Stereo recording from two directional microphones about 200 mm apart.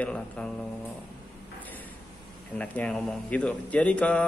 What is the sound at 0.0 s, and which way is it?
Mantra, 5° left (ahead or behind).